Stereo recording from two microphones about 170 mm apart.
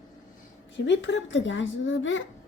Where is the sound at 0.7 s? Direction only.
90° left.